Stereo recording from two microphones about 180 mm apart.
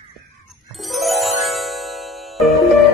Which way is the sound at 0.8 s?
Centre (ahead or behind).